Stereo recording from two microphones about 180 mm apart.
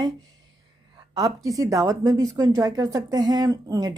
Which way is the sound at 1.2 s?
20° right (ahead or behind).